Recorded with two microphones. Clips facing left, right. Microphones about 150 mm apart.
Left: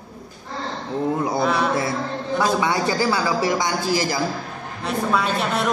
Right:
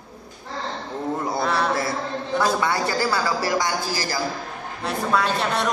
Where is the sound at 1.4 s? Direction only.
Centre (ahead or behind).